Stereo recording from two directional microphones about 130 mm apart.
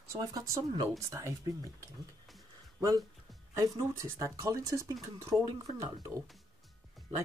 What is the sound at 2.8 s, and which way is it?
Speech, 25° right (ahead or behind).